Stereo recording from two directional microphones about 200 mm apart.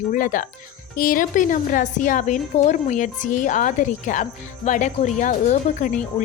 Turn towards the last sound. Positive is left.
turn(degrees=40)  # may be behind; listen again after turning